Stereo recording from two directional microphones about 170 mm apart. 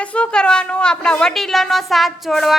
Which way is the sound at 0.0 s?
5° left (ahead or behind).